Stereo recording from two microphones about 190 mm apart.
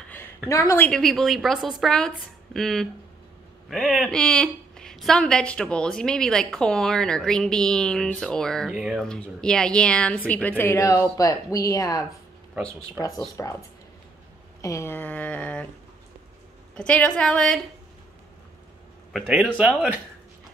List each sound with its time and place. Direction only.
0.5 s a woman's voice: 15° left (ahead or behind)
13.4 s a woman's voice: 15° left (ahead or behind)
14.6 s a woman's voice: 15° left (ahead or behind)
16.7 s a woman's voice: 5° left (ahead or behind)
19.1 s speech: 5° right (ahead or behind)